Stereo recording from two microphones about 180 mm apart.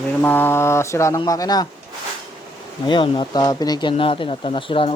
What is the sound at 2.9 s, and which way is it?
Speech, 25° left (ahead or behind).